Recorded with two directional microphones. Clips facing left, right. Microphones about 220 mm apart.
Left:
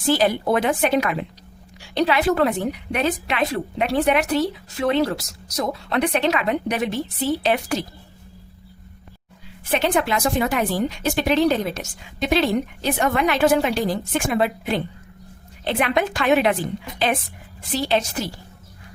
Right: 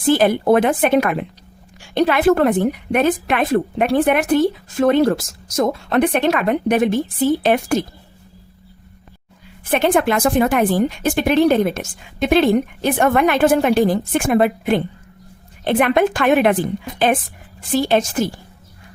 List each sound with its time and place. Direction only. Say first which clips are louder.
0.1 s a woman's voice: right 5 dB; 50° right (ahead or behind)
9.6 s a woman's voice: right 5 dB; 55° right (ahead or behind)
17.7 s a woman's voice: right 5 dB; 50° right (ahead or behind)